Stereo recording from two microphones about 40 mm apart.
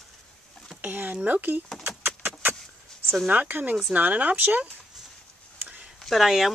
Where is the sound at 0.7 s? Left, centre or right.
Right.